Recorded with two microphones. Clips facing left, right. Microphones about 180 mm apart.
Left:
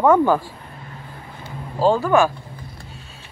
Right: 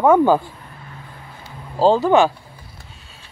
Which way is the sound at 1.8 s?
25° right (ahead or behind).